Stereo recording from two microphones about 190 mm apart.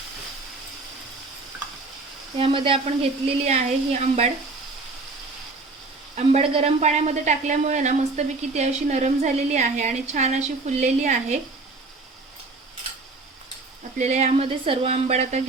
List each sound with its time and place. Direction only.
2.4 s a woman's voice: 30° right (ahead or behind)
6.1 s a woman's voice: 35° right (ahead or behind)
14.0 s a woman's voice: 35° right (ahead or behind)